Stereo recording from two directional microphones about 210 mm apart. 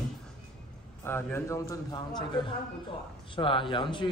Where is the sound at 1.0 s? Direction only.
10° left (ahead or behind).